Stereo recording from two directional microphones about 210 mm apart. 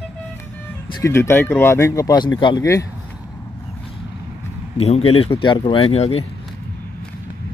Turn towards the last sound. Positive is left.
turn(degrees=30)  # may be behind; listen again after turning